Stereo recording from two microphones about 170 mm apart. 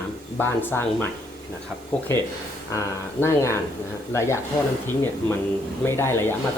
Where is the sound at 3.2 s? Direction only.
15° left (ahead or behind).